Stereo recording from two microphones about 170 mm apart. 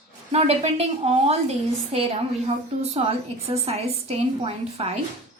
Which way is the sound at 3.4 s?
35° right (ahead or behind).